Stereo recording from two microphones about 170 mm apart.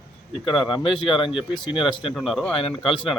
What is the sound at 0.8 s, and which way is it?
Speech, 30° left (ahead or behind).